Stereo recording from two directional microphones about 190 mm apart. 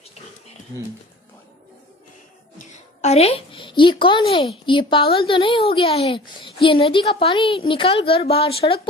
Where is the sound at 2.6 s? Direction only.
35° left (ahead or behind).